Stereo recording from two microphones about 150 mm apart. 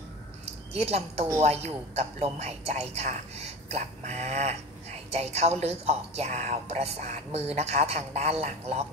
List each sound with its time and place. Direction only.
0.7 s speech: 45° right (ahead or behind)